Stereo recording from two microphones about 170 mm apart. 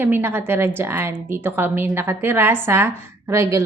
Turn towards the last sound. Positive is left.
turn(degrees=-15)  # may be behind; listen again after turning